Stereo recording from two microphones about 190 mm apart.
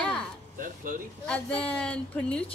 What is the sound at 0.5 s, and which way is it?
Speech, 45° right (ahead or behind).